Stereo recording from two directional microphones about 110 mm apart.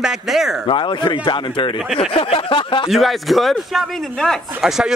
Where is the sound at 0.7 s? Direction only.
45° left (ahead or behind).